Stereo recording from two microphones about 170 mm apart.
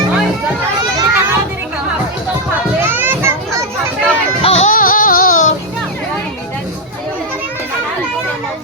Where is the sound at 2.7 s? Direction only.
15° right (ahead or behind).